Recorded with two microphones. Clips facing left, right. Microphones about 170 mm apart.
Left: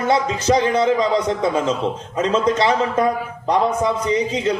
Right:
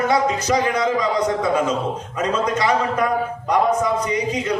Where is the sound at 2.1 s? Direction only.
25° left (ahead or behind).